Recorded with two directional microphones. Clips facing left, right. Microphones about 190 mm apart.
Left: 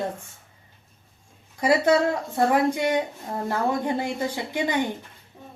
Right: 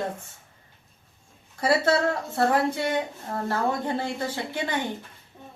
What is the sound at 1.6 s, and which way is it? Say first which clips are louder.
Speech: left 3 dB; 15° left (ahead or behind).